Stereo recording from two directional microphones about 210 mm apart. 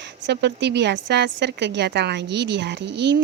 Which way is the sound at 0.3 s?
55° right (ahead or behind).